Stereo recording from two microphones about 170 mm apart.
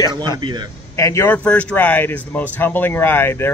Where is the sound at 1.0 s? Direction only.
15° left (ahead or behind).